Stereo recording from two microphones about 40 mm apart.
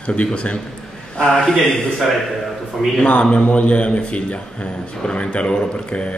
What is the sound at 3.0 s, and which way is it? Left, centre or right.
A man's voice, left.